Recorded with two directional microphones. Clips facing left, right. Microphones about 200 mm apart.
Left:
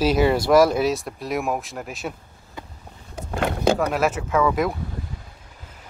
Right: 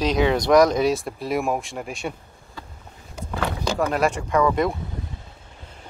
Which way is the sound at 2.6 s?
20° left (ahead or behind).